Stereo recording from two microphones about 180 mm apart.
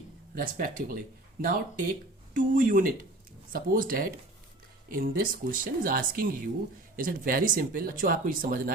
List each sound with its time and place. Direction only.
0.3 s speech: 50° right (ahead or behind)